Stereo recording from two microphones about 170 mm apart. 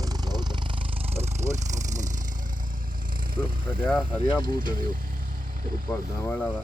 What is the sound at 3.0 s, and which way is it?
Vehicle, 55° right (ahead or behind).